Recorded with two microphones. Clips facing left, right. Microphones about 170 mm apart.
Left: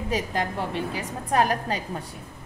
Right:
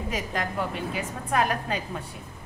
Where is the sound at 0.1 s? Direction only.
30° left (ahead or behind).